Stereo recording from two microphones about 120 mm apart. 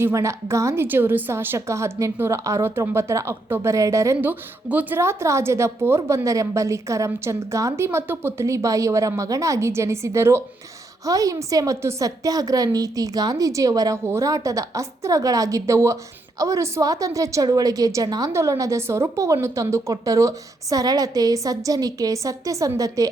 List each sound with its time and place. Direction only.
0.0 s a woman's voice: 25° right (ahead or behind)